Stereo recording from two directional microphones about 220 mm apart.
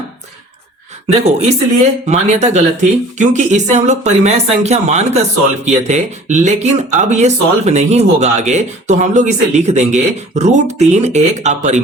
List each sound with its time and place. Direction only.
1.2 s speech: 30° right (ahead or behind)